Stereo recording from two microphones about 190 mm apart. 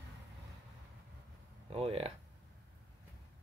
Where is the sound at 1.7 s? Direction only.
30° right (ahead or behind).